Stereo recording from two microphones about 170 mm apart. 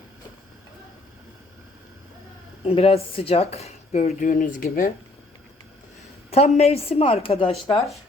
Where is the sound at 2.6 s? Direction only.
35° left (ahead or behind); by 4.9 s 55° left (ahead or behind).